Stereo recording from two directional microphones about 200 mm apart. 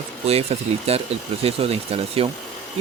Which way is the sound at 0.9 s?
30° right (ahead or behind).